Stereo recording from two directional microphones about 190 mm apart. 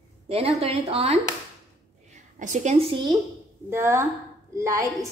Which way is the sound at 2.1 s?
40° right (ahead or behind).